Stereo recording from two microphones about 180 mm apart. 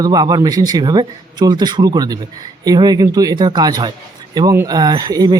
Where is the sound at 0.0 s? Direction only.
20° right (ahead or behind).